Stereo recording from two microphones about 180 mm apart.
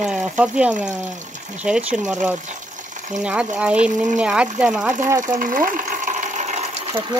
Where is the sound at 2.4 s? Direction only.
45° right (ahead or behind).